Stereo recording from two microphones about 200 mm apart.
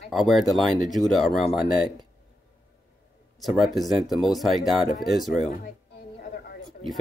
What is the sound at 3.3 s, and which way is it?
Speech, centre (ahead or behind).